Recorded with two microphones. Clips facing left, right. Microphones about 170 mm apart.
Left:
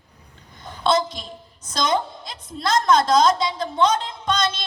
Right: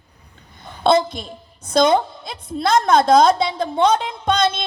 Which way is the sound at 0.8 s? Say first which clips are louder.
Right 5 dB; 55° right (ahead or behind).